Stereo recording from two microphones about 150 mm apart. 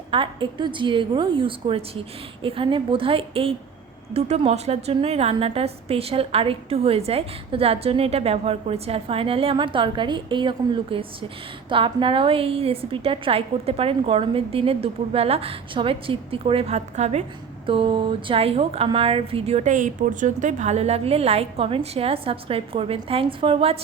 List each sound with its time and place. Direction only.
0.1 s a woman's voice: 35° right (ahead or behind)
17.7 s a woman's voice: 35° right (ahead or behind)